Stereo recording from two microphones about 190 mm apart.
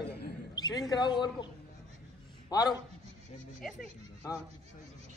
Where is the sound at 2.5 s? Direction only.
20° left (ahead or behind).